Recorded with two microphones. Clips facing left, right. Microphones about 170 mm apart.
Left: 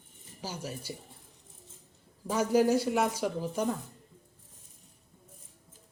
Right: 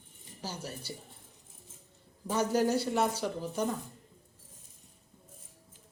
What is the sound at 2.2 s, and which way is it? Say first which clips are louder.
Speech: left 3 dB; 5° left (ahead or behind).